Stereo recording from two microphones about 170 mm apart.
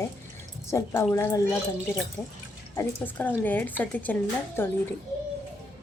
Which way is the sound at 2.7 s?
10° left (ahead or behind).